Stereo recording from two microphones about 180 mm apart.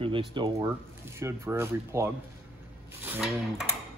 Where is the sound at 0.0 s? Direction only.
30° right (ahead or behind).